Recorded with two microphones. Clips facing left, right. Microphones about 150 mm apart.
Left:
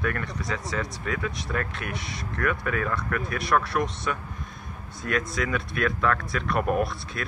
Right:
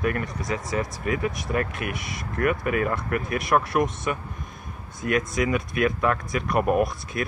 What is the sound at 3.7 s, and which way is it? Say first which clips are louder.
Speech: right 4 dB; 50° right (ahead or behind).